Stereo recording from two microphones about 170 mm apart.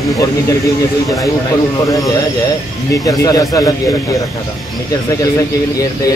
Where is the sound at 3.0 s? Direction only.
20° left (ahead or behind).